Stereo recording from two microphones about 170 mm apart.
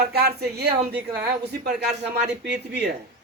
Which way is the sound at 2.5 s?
75° right (ahead or behind).